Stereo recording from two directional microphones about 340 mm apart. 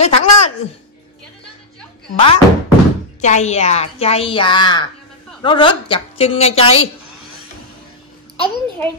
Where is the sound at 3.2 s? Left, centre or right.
Centre.